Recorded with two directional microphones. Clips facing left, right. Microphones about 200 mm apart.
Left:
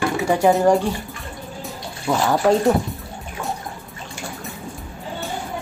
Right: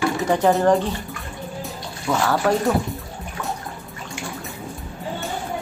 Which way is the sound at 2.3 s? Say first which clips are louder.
Left 4 dB; 20° left (ahead or behind).